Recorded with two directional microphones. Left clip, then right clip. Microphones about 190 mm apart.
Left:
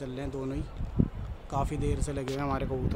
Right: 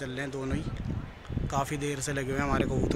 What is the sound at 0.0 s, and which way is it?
Speech, 5° left (ahead or behind).